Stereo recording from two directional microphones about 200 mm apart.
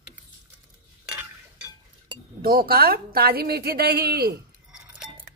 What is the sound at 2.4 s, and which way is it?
A woman's voice, 50° right (ahead or behind).